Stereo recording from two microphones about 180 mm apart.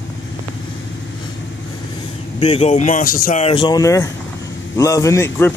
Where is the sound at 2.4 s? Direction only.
35° left (ahead or behind).